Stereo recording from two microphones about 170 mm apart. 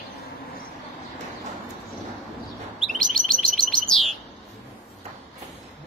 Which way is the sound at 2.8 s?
5° left (ahead or behind).